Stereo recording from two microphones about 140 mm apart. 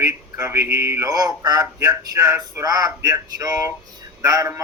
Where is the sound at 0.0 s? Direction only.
20° right (ahead or behind).